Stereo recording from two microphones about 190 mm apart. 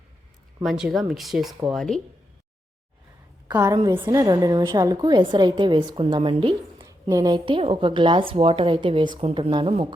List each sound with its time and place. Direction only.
0.6 s speech: centre (ahead or behind)
3.5 s a woman's voice: 20° right (ahead or behind)